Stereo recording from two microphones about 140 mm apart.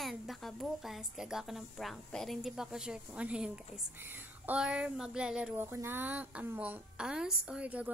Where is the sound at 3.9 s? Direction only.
15° right (ahead or behind).